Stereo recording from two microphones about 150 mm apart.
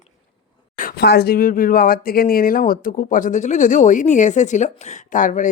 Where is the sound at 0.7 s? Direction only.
80° left.